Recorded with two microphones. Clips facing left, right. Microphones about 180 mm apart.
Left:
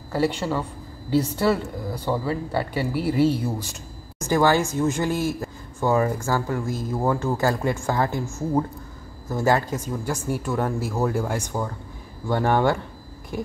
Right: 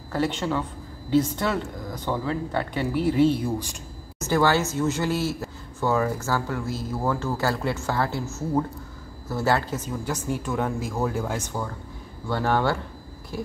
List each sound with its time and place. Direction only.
0.1 s speech: 10° left (ahead or behind)
3.3 s speech: 15° right (ahead or behind)
4.2 s speech: 15° left (ahead or behind)